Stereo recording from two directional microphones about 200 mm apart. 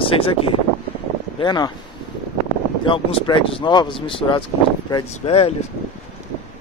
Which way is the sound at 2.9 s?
25° left (ahead or behind).